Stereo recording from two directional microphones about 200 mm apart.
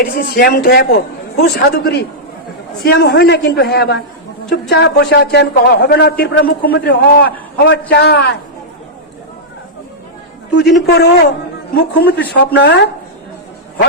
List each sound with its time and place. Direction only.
0.0 s a woman's voice: 45° left (ahead or behind)
10.5 s a woman's voice: 55° left (ahead or behind)